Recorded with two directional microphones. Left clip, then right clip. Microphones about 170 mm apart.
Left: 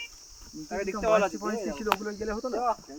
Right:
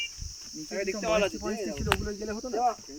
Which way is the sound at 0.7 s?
55° left (ahead or behind).